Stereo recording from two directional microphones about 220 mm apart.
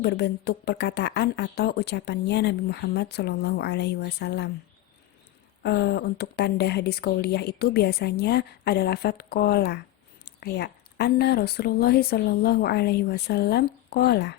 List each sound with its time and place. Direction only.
0.0 s a woman's voice: 50° left (ahead or behind)
5.6 s a woman's voice: 50° left (ahead or behind)